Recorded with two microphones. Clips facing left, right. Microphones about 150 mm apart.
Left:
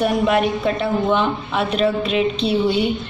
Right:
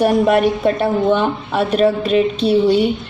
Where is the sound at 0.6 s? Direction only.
45° right (ahead or behind).